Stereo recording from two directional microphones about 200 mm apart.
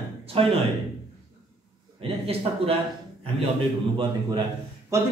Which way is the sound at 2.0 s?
30° right (ahead or behind).